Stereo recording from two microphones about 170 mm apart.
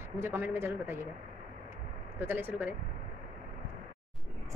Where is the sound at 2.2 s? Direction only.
10° right (ahead or behind).